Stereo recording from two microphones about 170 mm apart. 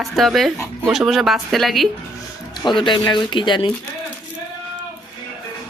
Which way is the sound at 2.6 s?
25° left (ahead or behind).